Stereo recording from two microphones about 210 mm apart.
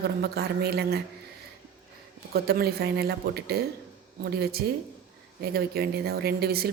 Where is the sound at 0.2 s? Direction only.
50° right (ahead or behind).